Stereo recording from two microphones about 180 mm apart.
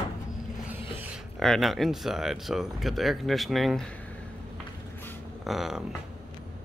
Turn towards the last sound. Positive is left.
turn(degrees=-5)  # may be behind; listen again after turning